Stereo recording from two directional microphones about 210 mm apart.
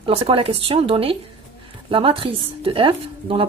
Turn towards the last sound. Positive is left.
turn(degrees=-25)  # may be behind; listen again after turning